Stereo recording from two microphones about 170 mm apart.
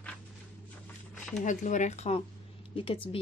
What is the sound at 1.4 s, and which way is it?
Speech, 45° left (ahead or behind).